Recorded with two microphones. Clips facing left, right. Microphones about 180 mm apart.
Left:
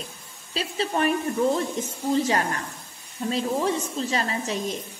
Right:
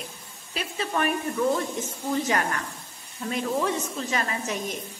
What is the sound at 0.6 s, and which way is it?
Speech, 30° left (ahead or behind).